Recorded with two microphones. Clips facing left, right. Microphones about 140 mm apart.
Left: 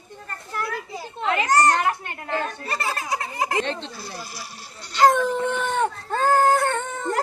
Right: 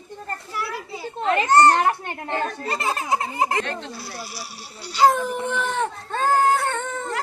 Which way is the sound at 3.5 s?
25° left (ahead or behind).